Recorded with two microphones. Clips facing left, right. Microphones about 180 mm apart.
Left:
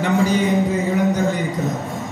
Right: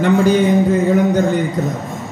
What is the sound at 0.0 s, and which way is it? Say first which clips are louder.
Speech: right 5 dB; 60° right (ahead or behind).